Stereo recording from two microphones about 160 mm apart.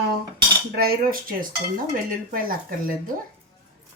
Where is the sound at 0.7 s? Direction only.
65° right (ahead or behind).